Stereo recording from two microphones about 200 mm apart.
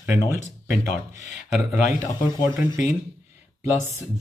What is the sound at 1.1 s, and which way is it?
Speech, 35° left (ahead or behind).